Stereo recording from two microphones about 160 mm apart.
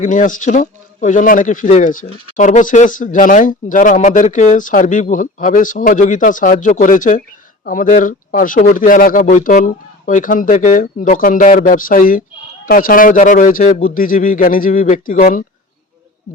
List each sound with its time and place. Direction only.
0.0 s speech: 55° left (ahead or behind)